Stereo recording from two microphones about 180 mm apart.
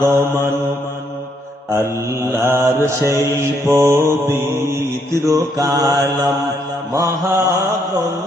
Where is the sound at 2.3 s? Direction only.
10° right (ahead or behind).